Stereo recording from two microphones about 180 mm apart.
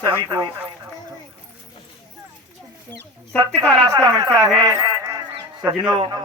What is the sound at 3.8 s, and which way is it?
Speech, 20° right (ahead or behind).